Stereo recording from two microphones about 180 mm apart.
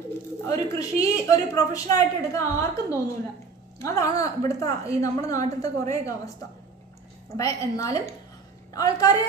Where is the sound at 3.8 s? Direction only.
20° left (ahead or behind).